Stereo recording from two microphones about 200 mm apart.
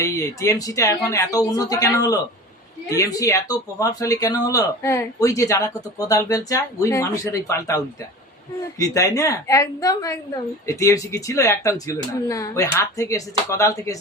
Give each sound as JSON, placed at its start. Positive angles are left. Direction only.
{"t": 0.0, "sound": "speech", "side_deg": 15}
{"t": 8.8, "sound": "speech", "side_deg": 15}